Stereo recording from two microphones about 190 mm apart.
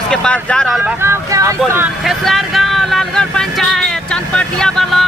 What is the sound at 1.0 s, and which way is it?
Speech, 15° right (ahead or behind).